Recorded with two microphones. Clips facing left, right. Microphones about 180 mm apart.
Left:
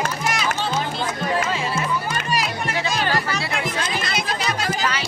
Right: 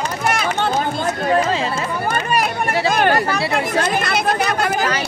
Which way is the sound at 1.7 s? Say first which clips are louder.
Right 3 dB; 55° right (ahead or behind).